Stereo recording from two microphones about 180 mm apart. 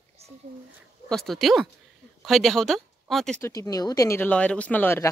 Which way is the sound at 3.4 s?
15° left (ahead or behind).